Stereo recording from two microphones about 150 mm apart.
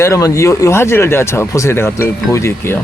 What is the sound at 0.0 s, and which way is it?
Speech, 20° left (ahead or behind).